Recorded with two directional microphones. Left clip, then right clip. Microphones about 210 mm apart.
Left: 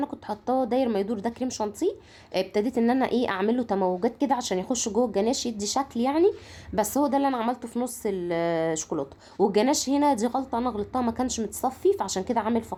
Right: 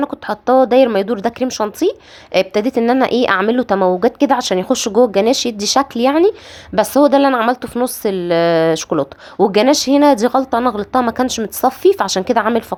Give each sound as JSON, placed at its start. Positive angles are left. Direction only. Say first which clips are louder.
{"t": 0.0, "sound": "speech", "louder": "right 12 dB", "side_deg": -20}